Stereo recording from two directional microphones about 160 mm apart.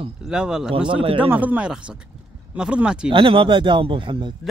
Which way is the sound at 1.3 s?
10° right (ahead or behind).